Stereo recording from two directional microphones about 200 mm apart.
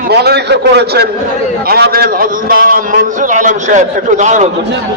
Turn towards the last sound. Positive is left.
turn(degrees=-35)  # may be behind; listen again after turning